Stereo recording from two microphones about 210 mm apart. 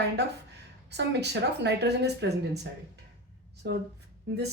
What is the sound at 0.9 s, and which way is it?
A woman's voice, 55° right (ahead or behind).